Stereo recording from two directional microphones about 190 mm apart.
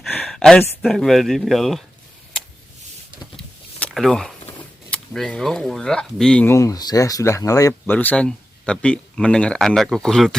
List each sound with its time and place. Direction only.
0.0 s speech: centre (ahead or behind)
3.3 s a sound: centre (ahead or behind)
4.9 s speech: 5° left (ahead or behind)